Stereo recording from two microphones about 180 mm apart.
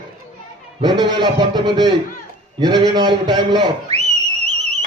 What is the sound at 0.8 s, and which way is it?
A man's voice, 25° right (ahead or behind).